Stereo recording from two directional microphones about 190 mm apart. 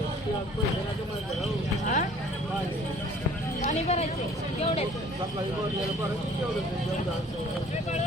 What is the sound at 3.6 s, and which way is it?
Speech, 35° left (ahead or behind).